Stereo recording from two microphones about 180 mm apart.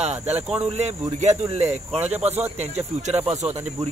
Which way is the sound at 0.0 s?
35° right (ahead or behind).